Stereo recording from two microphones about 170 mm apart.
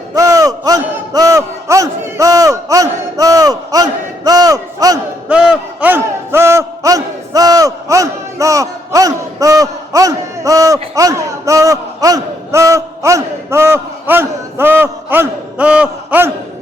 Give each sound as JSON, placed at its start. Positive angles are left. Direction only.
{"t": 0.1, "sound": "speech", "side_deg": -20}
{"t": 5.3, "sound": "a man's voice", "side_deg": -5}